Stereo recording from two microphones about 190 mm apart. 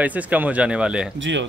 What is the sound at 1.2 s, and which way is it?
Speech, 70° right (ahead or behind).